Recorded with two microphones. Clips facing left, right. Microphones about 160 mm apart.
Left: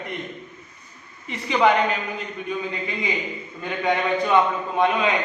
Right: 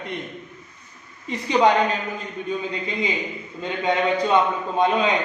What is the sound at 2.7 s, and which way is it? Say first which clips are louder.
Speech: right 2 dB; 25° right (ahead or behind).